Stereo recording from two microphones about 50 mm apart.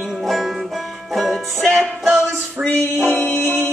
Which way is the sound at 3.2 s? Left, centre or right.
Centre.